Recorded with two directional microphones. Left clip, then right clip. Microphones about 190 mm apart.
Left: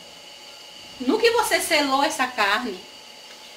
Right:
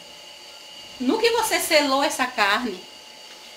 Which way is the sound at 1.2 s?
35° right (ahead or behind).